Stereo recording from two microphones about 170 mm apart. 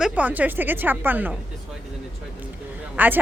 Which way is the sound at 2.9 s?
10° right (ahead or behind).